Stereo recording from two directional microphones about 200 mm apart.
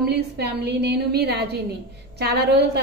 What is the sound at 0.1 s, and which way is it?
A woman's voice, 55° right (ahead or behind).